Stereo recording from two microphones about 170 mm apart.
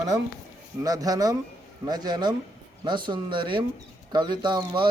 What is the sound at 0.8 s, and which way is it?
Speech, 20° right (ahead or behind).